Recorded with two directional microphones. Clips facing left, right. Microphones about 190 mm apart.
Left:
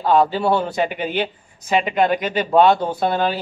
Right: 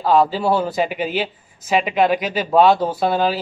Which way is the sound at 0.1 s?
Centre (ahead or behind).